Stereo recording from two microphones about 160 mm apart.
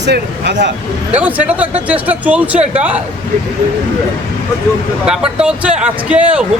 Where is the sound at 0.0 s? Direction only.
90° right.